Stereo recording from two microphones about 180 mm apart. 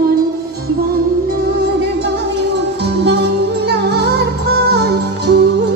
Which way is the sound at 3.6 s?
65° right (ahead or behind).